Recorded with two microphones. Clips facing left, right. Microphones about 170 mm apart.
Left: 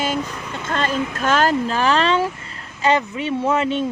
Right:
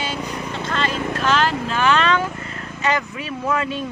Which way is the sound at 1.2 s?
45° left (ahead or behind).